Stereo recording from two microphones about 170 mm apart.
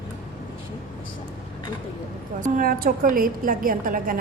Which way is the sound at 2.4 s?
50° right (ahead or behind).